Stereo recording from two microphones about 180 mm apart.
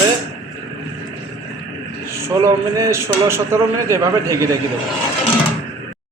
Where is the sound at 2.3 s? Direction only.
20° right (ahead or behind).